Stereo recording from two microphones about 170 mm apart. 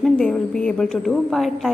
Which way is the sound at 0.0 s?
5° left (ahead or behind).